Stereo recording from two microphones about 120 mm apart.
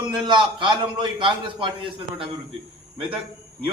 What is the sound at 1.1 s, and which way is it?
A man's voice, 45° right (ahead or behind).